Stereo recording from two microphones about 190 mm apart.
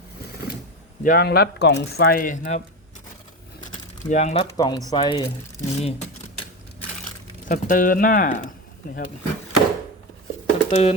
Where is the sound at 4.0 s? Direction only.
40° left (ahead or behind).